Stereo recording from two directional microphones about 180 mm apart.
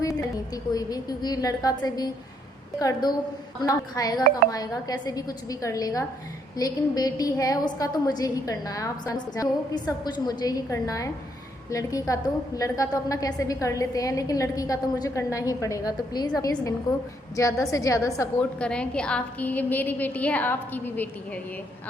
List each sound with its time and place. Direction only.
0.0 s a woman's voice: 20° left (ahead or behind)
18.3 s a woman's voice: 5° left (ahead or behind)